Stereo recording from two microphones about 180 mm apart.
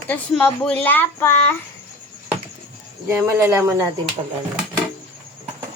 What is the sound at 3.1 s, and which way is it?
Speech, 10° right (ahead or behind).